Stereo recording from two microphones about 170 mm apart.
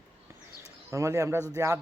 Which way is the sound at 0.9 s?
20° right (ahead or behind).